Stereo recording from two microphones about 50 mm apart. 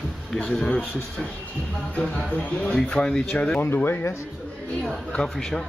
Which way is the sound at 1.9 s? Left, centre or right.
Left.